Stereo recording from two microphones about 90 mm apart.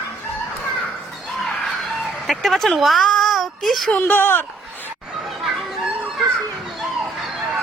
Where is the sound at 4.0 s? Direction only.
25° left (ahead or behind).